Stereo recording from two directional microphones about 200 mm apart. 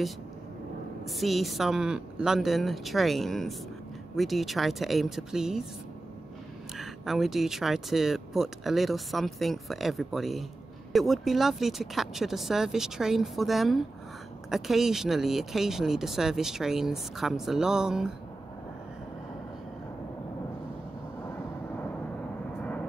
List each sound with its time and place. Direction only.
1.0 s speech: centre (ahead or behind)
6.8 s speech: centre (ahead or behind)
22.6 s vehicle: 5° left (ahead or behind)